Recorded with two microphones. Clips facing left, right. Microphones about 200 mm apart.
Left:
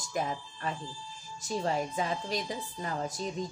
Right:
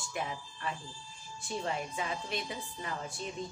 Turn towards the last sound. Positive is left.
turn(degrees=40)  # may be behind; listen again after turning